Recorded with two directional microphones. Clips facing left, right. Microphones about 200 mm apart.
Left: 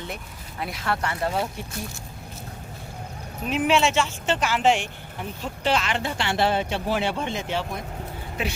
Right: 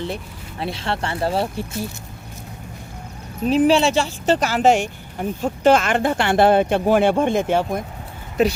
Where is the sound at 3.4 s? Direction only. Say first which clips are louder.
Right 6 dB; 35° right (ahead or behind); by 7.8 s 50° right (ahead or behind).